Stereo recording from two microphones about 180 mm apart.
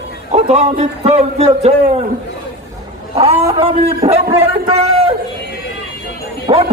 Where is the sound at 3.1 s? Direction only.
30° right (ahead or behind).